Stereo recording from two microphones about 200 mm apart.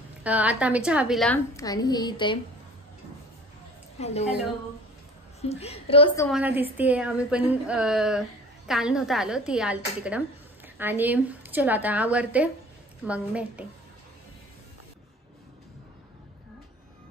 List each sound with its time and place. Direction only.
0.2 s a woman's voice: 5° right (ahead or behind)
1.6 s a woman's voice: 20° left (ahead or behind)
4.0 s a woman's voice: 30° left (ahead or behind)
5.4 s a woman's voice: 30° left (ahead or behind)
6.3 s a woman's voice: 10° right (ahead or behind)